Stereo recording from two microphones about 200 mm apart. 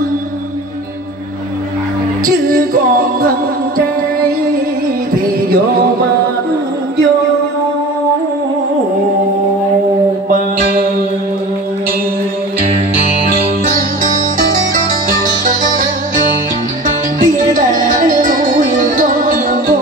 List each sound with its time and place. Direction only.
2.2 s music: 45° right (ahead or behind)
13.3 s music: 45° right (ahead or behind)
15.2 s music: 40° right (ahead or behind)
17.2 s music: 40° right (ahead or behind)